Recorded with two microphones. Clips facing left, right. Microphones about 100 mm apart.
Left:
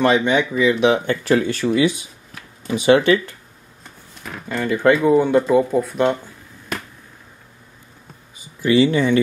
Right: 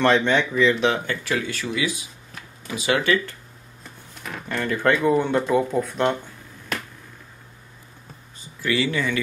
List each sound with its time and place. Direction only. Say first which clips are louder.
0.0 s speech: left 2 dB; 10° left (ahead or behind)
1.2 s speech: left 9 dB; 35° left (ahead or behind)
4.5 s speech: left 5 dB; 5° left (ahead or behind)
8.6 s speech: left 8 dB; 25° left (ahead or behind)